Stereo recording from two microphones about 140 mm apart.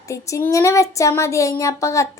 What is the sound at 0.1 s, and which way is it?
A child's voice, 20° left (ahead or behind).